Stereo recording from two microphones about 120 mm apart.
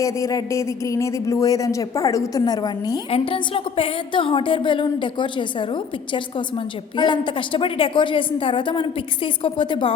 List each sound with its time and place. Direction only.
0.0 s speech: 25° left (ahead or behind)
3.1 s speech: 50° left (ahead or behind)